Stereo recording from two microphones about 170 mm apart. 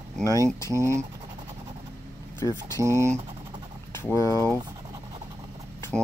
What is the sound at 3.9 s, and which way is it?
Speech, 15° left (ahead or behind).